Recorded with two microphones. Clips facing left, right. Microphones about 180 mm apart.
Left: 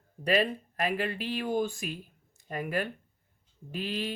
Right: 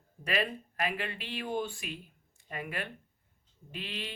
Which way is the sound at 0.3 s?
35° left (ahead or behind).